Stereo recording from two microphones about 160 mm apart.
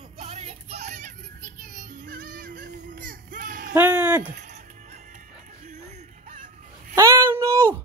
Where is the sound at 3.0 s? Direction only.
60° right (ahead or behind).